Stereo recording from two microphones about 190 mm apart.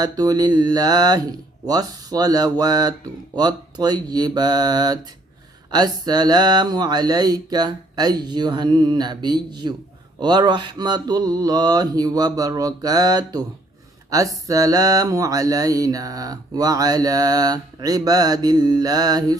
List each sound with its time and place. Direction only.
0.0 s mantra: 20° right (ahead or behind)